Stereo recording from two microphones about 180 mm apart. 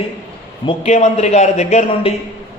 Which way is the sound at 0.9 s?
40° left (ahead or behind).